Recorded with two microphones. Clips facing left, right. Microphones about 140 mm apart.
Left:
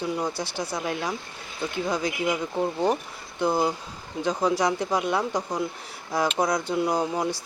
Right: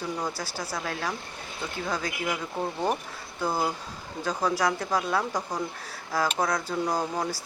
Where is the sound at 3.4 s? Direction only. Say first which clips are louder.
Left 4 dB; 20° left (ahead or behind).